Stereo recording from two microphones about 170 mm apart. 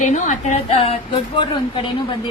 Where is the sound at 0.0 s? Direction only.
45° left (ahead or behind).